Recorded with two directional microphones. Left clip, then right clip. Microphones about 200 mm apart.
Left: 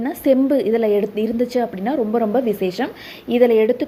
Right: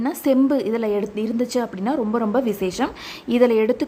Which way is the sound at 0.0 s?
Centre (ahead or behind).